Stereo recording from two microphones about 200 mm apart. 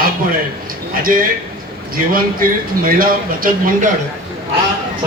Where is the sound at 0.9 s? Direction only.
45° right (ahead or behind).